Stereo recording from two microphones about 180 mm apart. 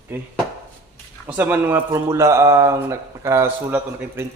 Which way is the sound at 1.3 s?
10° right (ahead or behind).